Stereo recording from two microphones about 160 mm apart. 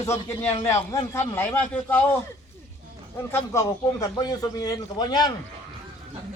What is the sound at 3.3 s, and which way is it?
A man's voice, 20° left (ahead or behind).